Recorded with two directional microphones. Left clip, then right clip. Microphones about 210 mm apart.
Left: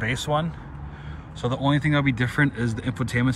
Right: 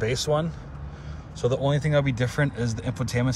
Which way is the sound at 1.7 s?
20° right (ahead or behind).